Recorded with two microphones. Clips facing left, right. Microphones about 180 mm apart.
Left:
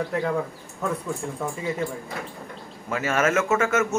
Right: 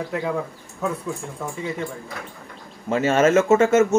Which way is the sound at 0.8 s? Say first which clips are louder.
Right 1 dB; centre (ahead or behind).